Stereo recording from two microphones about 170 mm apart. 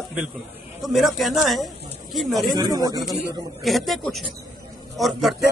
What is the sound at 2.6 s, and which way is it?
Speech, 25° right (ahead or behind).